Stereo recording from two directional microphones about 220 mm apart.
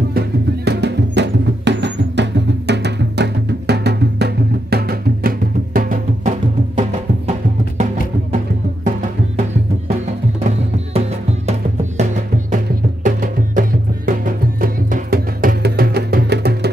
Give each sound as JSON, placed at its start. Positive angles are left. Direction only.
{"t": 0.7, "sound": "music", "side_deg": -50}
{"t": 13.0, "sound": "music", "side_deg": -35}